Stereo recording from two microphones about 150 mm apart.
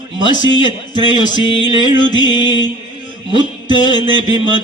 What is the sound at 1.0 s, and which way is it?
Music, 30° left (ahead or behind).